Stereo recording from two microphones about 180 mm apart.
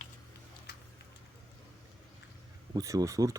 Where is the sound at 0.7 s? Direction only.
70° left (ahead or behind).